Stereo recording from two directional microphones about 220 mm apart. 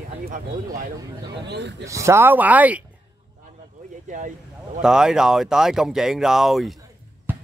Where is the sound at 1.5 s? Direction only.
50° right (ahead or behind).